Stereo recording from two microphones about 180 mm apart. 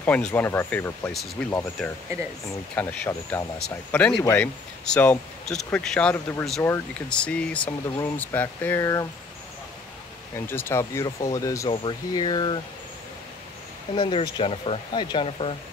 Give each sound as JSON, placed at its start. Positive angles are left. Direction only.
{"t": 0.0, "sound": "speech", "side_deg": 10}
{"t": 10.3, "sound": "speech", "side_deg": 10}
{"t": 13.9, "sound": "speech", "side_deg": 30}